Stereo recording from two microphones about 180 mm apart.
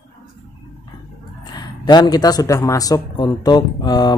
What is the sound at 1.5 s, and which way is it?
Speech, 25° left (ahead or behind).